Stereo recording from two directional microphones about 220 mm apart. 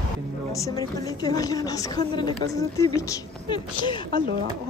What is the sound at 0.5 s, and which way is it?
Speech, 15° left (ahead or behind).